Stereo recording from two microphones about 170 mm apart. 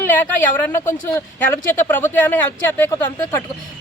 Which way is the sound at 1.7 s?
15° left (ahead or behind).